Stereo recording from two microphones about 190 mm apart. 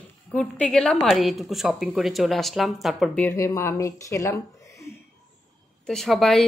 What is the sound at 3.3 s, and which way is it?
Speech, 15° left (ahead or behind).